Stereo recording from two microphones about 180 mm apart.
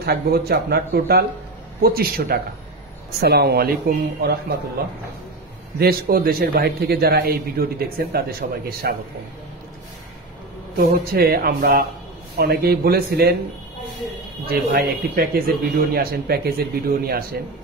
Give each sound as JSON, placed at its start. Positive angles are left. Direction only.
{"t": 0.0, "sound": "a man's voice", "side_deg": -60}
{"t": 5.8, "sound": "a man's voice", "side_deg": -55}
{"t": 11.1, "sound": "a man's voice", "side_deg": -60}
{"t": 14.4, "sound": "a man's voice", "side_deg": -55}